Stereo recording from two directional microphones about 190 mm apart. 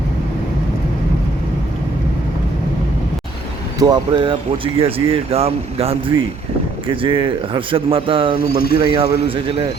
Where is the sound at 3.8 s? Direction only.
20° right (ahead or behind).